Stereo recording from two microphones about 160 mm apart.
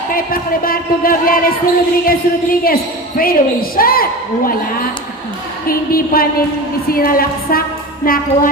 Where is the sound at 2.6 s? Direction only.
65° left (ahead or behind).